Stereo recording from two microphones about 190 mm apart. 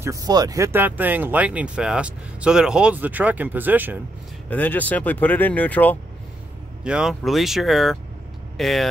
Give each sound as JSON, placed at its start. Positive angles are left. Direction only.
{"t": 0.0, "sound": "speech", "side_deg": -20}
{"t": 4.5, "sound": "speech", "side_deg": 10}
{"t": 6.8, "sound": "speech", "side_deg": -5}